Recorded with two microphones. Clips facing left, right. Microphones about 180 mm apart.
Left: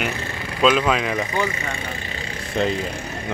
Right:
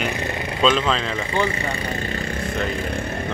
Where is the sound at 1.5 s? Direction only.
35° right (ahead or behind).